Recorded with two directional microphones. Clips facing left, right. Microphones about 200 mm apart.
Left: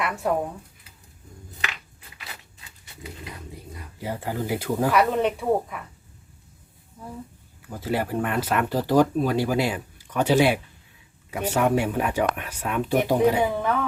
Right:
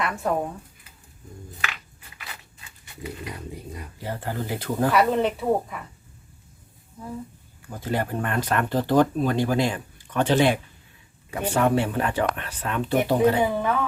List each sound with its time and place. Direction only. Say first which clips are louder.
0.0 s speech: even; 5° left (ahead or behind)
4.0 s speech: left 2 dB; 10° left (ahead or behind)
7.7 s speech: left 1 dB; 5° left (ahead or behind)
13.4 s speech: even; 5° right (ahead or behind)